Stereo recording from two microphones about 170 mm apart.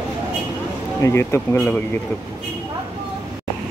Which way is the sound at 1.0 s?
15° left (ahead or behind).